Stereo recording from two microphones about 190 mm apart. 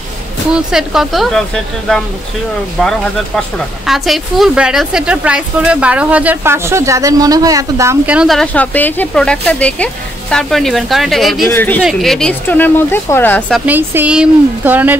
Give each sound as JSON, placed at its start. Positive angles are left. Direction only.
{"t": 0.5, "sound": "speech", "side_deg": -5}
{"t": 8.2, "sound": "speech", "side_deg": 0}
{"t": 13.5, "sound": "speech", "side_deg": -10}